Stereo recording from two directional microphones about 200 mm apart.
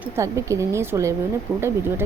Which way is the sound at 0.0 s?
15° right (ahead or behind).